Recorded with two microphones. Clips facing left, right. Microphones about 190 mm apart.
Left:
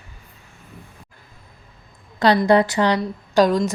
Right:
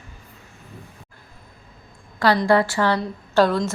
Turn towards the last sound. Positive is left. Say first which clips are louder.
# left 2 dB
turn(degrees=15)  # may be behind; listen again after turning